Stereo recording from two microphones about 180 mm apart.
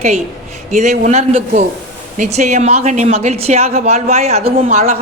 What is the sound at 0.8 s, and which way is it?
A woman's voice, 40° right (ahead or behind).